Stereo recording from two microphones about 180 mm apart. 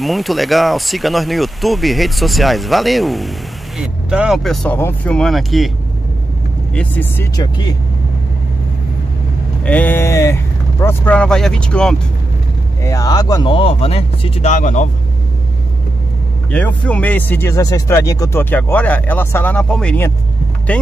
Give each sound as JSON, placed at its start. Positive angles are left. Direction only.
{"t": 0.0, "sound": "speech", "side_deg": 0}
{"t": 6.7, "sound": "speech", "side_deg": 10}
{"t": 7.3, "sound": "speech", "side_deg": 25}
{"t": 9.7, "sound": "speech", "side_deg": 10}
{"t": 12.8, "sound": "speech", "side_deg": 20}
{"t": 16.4, "sound": "speech", "side_deg": 5}